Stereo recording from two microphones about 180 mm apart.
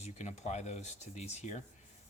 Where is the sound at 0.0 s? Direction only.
40° left (ahead or behind).